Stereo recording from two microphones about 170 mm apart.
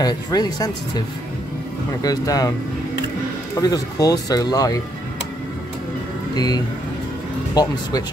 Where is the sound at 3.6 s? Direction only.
20° left (ahead or behind).